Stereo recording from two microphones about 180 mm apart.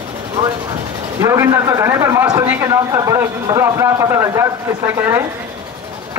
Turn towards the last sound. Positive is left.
turn(degrees=-10)  # may be behind; listen again after turning